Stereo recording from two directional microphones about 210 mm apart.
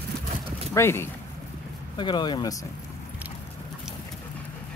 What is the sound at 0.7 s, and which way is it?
Speech, 10° left (ahead or behind).